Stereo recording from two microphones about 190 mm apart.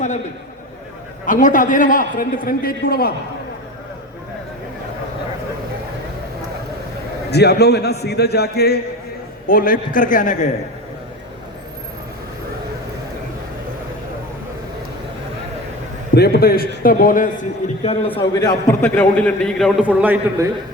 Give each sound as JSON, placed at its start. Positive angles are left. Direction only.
{"t": 1.2, "sound": "a man's voice", "side_deg": 45}
{"t": 7.3, "sound": "a man's voice", "side_deg": 60}
{"t": 16.1, "sound": "a man's voice", "side_deg": 55}
{"t": 17.8, "sound": "a man's voice", "side_deg": 30}
{"t": 19.8, "sound": "a man's voice", "side_deg": -10}